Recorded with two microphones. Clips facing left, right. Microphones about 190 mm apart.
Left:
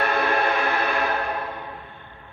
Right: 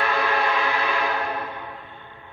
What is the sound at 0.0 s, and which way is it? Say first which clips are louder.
Train: left 1 dB; 50° left (ahead or behind).